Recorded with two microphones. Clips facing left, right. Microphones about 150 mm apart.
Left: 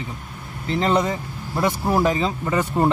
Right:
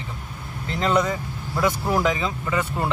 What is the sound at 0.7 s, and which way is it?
Speech, 25° left (ahead or behind).